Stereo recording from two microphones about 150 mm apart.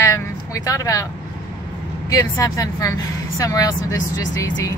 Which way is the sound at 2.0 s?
20° left (ahead or behind).